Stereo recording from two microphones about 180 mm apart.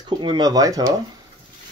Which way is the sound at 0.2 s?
25° right (ahead or behind).